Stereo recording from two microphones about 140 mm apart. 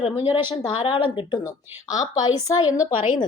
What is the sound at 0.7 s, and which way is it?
Speech, 40° left (ahead or behind).